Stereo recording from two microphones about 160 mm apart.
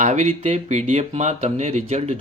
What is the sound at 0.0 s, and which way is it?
Speech, 50° right (ahead or behind).